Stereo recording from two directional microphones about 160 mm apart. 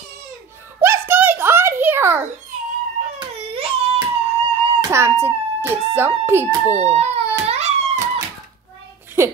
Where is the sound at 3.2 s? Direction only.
35° right (ahead or behind).